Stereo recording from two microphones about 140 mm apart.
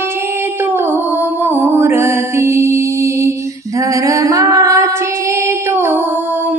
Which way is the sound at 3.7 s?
25° right (ahead or behind).